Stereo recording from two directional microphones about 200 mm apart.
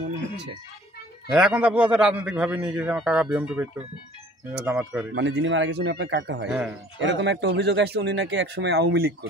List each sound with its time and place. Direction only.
1.3 s a man's voice: 5° right (ahead or behind)
5.1 s speech: 70° right (ahead or behind)